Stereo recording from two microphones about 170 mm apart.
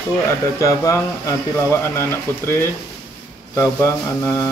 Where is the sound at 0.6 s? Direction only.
20° left (ahead or behind).